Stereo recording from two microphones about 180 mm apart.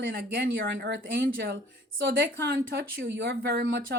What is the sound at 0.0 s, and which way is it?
Speech, 85° right.